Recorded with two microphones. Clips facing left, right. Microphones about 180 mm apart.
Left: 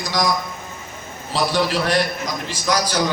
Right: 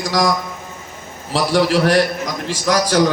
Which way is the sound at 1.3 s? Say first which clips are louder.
Right 4 dB; 90° right.